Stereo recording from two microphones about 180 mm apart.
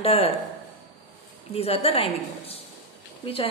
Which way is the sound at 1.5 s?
35° left (ahead or behind).